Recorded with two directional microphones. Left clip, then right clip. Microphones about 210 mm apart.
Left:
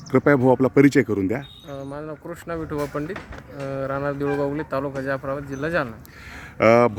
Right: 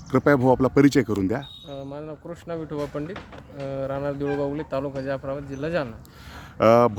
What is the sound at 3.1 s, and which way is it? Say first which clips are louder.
Speech: left 4 dB; 50° left (ahead or behind).